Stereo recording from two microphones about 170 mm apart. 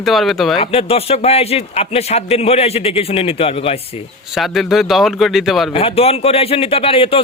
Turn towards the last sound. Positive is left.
turn(degrees=30)  # may be behind; listen again after turning